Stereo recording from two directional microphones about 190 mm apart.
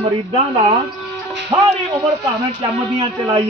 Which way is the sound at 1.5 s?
25° right (ahead or behind).